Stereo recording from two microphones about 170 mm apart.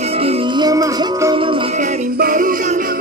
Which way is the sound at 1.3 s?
30° right (ahead or behind).